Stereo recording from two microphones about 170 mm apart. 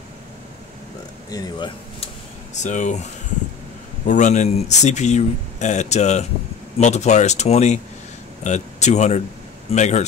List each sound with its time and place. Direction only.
1.3 s speech: 25° left (ahead or behind)
2.5 s speech: 45° left (ahead or behind)